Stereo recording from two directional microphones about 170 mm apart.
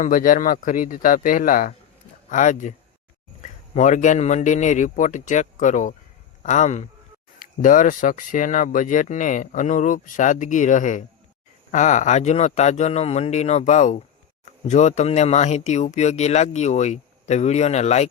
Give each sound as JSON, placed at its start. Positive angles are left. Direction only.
{"t": 0.0, "sound": "speech", "side_deg": 55}